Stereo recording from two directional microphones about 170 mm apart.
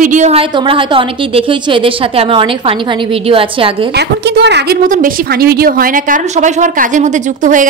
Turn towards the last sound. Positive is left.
turn(degrees=-50)  # may be behind; listen again after turning